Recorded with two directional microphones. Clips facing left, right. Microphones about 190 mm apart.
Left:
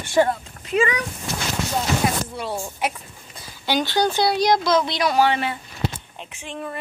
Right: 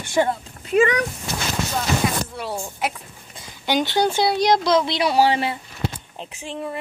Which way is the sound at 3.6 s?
20° right (ahead or behind).